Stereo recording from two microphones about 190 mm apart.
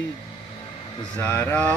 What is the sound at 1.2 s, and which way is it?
Mantra, 10° left (ahead or behind).